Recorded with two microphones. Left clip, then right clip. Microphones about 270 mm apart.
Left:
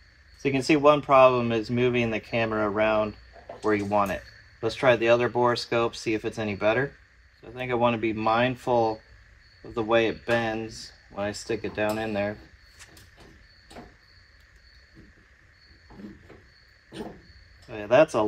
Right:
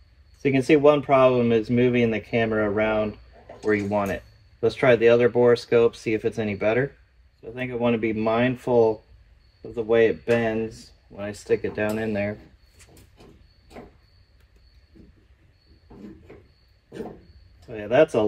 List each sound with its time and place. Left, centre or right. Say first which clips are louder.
0.4 s speech: right 4 dB; centre
17.6 s speech: right 1 dB; centre